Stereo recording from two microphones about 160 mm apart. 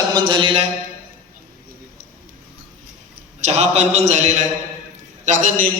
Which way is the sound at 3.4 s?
45° right (ahead or behind).